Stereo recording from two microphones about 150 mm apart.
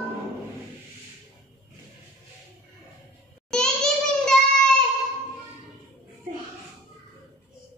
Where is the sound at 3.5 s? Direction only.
5° left (ahead or behind).